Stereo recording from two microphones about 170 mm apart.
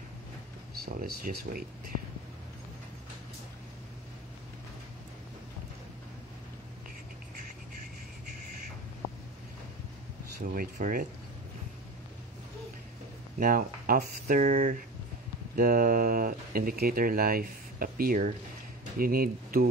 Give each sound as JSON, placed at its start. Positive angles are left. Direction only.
{"t": 0.8, "sound": "speech", "side_deg": -55}
{"t": 10.5, "sound": "speech", "side_deg": -55}
{"t": 13.4, "sound": "speech", "side_deg": -55}